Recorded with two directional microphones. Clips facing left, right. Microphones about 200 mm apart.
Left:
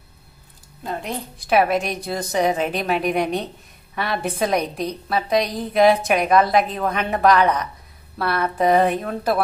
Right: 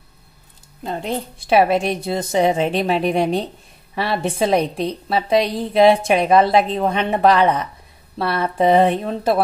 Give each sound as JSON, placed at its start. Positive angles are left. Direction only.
{"t": 0.8, "sound": "a woman's voice", "side_deg": -25}